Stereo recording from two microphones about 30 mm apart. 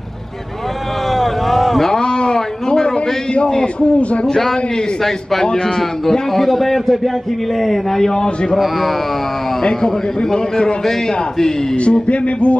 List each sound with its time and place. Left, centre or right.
1.1 s boat: centre
1.9 s a sound: left
3.6 s music: left
4.3 s a man's voice: centre
8.0 s a man's voice: left
9.7 s a man's voice: left
10.9 s a man's voice: centre
11.7 s music: left